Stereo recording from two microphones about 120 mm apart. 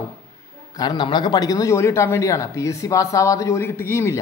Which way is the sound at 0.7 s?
35° left (ahead or behind).